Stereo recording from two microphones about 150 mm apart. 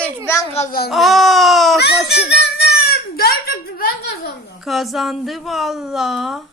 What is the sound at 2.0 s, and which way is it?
Crying, 90° left.